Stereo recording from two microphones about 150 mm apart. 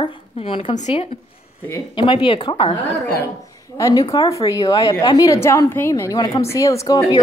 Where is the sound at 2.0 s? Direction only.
35° left (ahead or behind).